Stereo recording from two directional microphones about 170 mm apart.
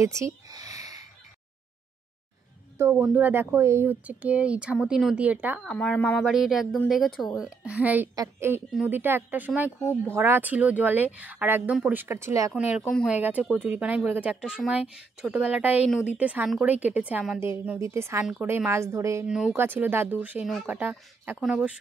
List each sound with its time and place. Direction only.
0.0 s speech: 20° right (ahead or behind)
2.8 s speech: 10° right (ahead or behind)
5.6 s speech: 5° left (ahead or behind); by 12.5 s 15° right (ahead or behind)
12.5 s speech: centre (ahead or behind)
13.1 s speech: 10° right (ahead or behind)
19.2 s speech: 5° right (ahead or behind)